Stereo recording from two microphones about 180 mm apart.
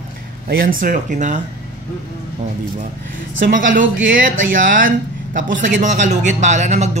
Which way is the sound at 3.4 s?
50° right (ahead or behind).